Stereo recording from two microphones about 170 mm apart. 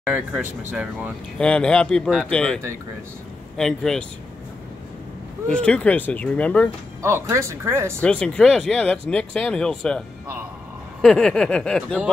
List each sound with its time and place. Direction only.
0.0 s speech: 10° right (ahead or behind)
1.4 s speech: 5° left (ahead or behind)
5.5 s speech: 5° left (ahead or behind)
7.0 s speech: 15° right (ahead or behind)
8.0 s speech: 5° left (ahead or behind)